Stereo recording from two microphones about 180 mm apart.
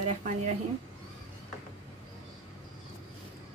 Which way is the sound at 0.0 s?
40° right (ahead or behind).